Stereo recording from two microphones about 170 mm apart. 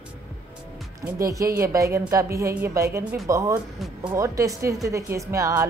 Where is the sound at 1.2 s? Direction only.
20° right (ahead or behind).